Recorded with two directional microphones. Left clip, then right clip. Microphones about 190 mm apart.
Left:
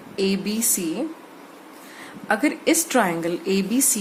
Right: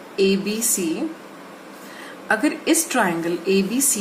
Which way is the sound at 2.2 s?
35° left (ahead or behind).